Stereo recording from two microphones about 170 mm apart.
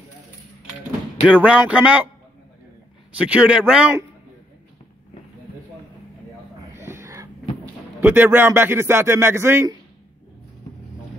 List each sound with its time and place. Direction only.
1.4 s speech: 5° right (ahead or behind)
3.2 s speech: 10° right (ahead or behind)
6.7 s a sound: 15° right (ahead or behind)
8.0 s speech: 10° right (ahead or behind)